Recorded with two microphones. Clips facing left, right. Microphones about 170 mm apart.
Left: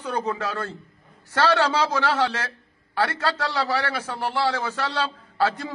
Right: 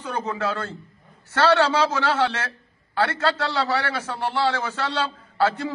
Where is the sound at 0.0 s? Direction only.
15° left (ahead or behind).